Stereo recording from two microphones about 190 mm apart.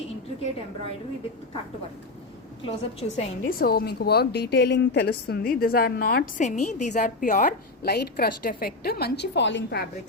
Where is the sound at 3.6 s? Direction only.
55° left (ahead or behind).